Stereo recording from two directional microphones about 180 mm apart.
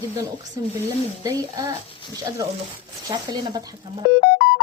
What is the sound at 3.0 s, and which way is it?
Speech, 20° right (ahead or behind).